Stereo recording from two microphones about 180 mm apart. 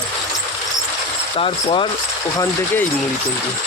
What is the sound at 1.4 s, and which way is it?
Speech, 30° left (ahead or behind).